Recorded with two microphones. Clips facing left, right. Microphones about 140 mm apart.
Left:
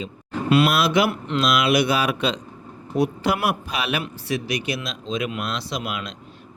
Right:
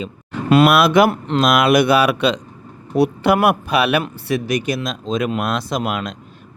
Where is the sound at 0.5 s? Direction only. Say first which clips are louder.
Right 6 dB; 55° right (ahead or behind); by 3.3 s 75° right (ahead or behind).